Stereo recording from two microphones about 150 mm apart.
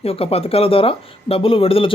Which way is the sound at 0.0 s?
40° left (ahead or behind).